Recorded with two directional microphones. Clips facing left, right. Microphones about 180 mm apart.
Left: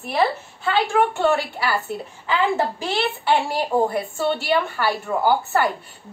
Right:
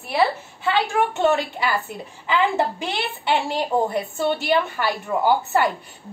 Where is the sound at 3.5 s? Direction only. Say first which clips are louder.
Left 1 dB; 20° right (ahead or behind).